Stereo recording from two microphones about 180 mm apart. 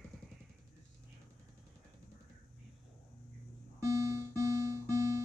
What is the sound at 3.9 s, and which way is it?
Music, 15° right (ahead or behind).